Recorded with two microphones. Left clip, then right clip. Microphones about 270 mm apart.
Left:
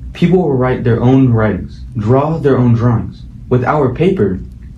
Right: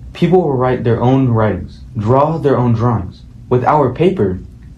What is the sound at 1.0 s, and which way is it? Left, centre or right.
Speech, right.